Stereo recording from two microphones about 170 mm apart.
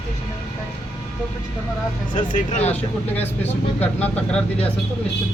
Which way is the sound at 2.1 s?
45° left (ahead or behind).